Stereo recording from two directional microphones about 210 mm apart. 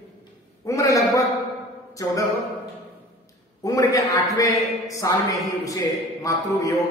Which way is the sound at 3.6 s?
15° left (ahead or behind).